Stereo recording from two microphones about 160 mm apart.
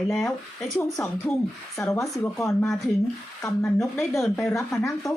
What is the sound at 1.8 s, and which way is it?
Speech, 20° left (ahead or behind).